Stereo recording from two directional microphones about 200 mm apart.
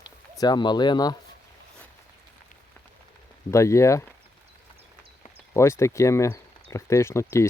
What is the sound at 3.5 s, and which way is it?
Speech, 15° left (ahead or behind).